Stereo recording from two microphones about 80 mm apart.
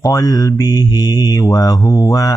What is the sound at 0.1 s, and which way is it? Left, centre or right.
Mantra, left.